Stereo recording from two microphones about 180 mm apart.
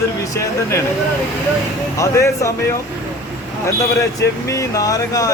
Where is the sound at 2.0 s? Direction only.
15° left (ahead or behind).